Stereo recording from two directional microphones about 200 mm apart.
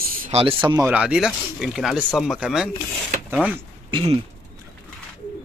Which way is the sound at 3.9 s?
30° right (ahead or behind).